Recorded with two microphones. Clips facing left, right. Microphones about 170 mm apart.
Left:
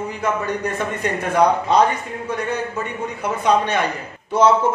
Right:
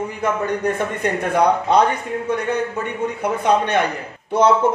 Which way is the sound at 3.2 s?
55° right (ahead or behind).